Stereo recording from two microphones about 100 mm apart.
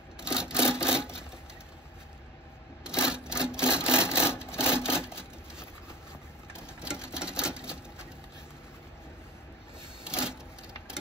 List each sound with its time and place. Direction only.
0.2 s rub: 10° right (ahead or behind)
0.8 s a sound: 10° right (ahead or behind)
3.0 s sewing machine: 10° right (ahead or behind)
3.4 s wood: 10° right (ahead or behind)
4.6 s wood: 25° left (ahead or behind)
6.8 s a sound: 10° right (ahead or behind)
10.0 s printer: 10° right (ahead or behind)